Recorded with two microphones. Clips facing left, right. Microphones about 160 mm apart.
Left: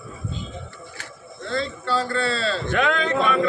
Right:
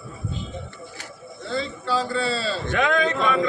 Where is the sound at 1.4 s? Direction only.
5° right (ahead or behind).